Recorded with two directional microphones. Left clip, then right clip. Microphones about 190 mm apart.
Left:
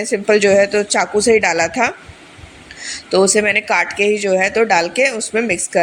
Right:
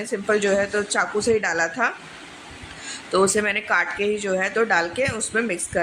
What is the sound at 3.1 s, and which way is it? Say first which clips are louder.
Speech: left 7 dB; 20° left (ahead or behind).